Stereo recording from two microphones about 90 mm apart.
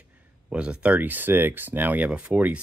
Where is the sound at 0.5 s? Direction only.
10° right (ahead or behind).